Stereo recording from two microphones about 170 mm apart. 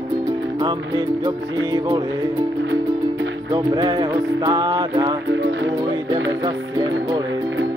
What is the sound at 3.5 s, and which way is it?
Music, 25° right (ahead or behind).